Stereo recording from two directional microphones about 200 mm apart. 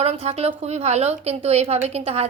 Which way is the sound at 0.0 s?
30° right (ahead or behind).